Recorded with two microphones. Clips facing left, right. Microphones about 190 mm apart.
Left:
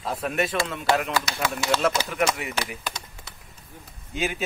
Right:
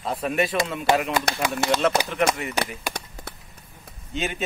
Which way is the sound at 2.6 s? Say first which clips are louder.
Right 3 dB; 60° right (ahead or behind).